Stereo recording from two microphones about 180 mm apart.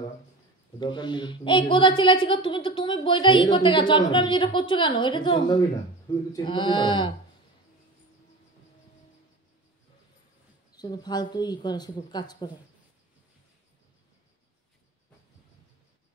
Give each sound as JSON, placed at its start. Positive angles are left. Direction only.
{"t": 0.7, "sound": "a woman's voice", "side_deg": 25}
{"t": 10.7, "sound": "a woman's voice", "side_deg": 20}